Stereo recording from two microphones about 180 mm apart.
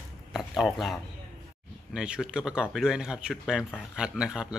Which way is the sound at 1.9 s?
5° right (ahead or behind).